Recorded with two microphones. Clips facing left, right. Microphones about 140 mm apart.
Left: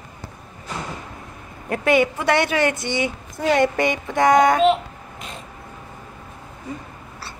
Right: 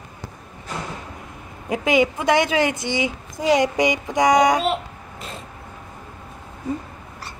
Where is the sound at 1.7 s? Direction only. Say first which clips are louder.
Left 1 dB; 15° right (ahead or behind).